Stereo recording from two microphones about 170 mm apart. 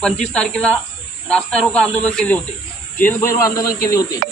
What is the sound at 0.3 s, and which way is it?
A man's voice, 5° left (ahead or behind).